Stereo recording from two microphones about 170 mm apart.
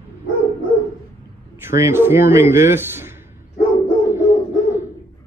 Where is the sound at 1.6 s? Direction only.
15° right (ahead or behind).